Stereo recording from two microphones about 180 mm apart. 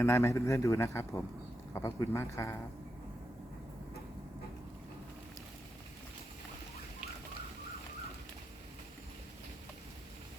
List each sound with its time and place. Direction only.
0.0 s a man's voice: 15° left (ahead or behind)